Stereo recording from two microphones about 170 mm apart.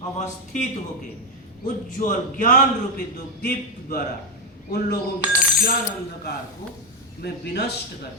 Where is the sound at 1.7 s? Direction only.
50° left (ahead or behind).